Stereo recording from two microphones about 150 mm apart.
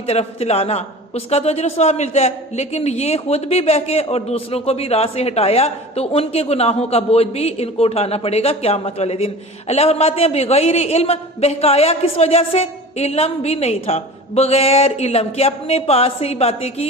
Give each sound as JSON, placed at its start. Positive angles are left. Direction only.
{"t": 0.1, "sound": "a man's voice", "side_deg": 45}